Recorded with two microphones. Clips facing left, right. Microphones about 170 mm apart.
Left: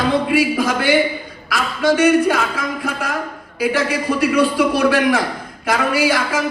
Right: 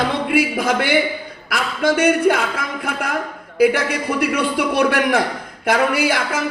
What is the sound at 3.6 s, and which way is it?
A man's voice, 60° right (ahead or behind).